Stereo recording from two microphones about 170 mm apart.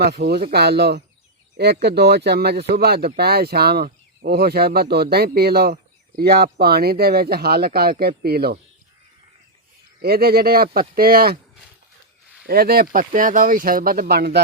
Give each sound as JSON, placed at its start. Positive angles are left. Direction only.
{"t": 0.3, "sound": "speech", "side_deg": -65}
{"t": 10.0, "sound": "speech", "side_deg": -65}
{"t": 12.5, "sound": "speech", "side_deg": -60}